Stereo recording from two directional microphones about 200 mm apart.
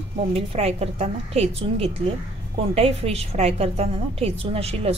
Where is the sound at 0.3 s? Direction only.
30° right (ahead or behind).